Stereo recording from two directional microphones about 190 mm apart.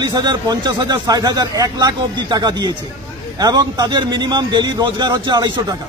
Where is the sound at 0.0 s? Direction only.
20° right (ahead or behind).